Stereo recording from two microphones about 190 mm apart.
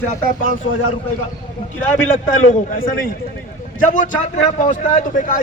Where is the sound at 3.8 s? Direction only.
45° left (ahead or behind).